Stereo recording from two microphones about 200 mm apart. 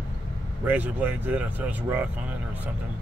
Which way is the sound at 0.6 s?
10° right (ahead or behind).